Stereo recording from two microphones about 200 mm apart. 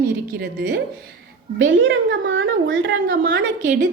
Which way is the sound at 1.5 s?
70° right (ahead or behind).